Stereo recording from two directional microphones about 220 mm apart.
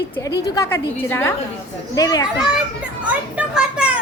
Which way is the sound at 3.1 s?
5° right (ahead or behind).